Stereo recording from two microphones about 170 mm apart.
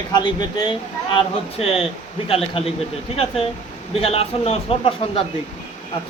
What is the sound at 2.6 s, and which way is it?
Speech, 30° left (ahead or behind).